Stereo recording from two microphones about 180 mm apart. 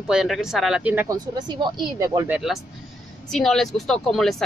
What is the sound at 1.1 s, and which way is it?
Speech, 25° right (ahead or behind).